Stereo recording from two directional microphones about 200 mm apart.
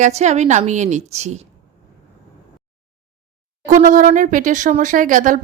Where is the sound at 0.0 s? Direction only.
35° right (ahead or behind).